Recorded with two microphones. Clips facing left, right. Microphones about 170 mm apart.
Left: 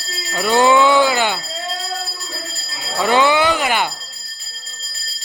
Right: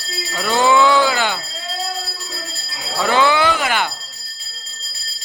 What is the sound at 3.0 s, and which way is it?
Chink, 15° left (ahead or behind).